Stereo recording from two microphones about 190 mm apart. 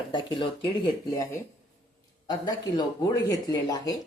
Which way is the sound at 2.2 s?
20° left (ahead or behind).